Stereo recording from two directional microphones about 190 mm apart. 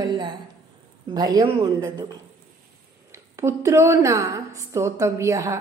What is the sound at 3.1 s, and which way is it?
A woman's voice, 15° right (ahead or behind).